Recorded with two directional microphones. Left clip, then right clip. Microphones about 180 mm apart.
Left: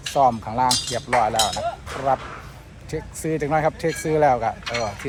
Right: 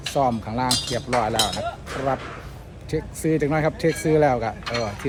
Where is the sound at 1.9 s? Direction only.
20° left (ahead or behind).